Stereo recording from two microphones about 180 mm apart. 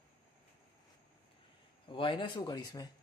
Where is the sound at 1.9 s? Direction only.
30° left (ahead or behind).